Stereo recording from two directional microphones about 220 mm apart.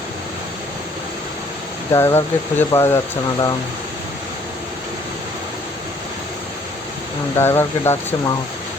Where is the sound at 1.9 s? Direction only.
10° left (ahead or behind).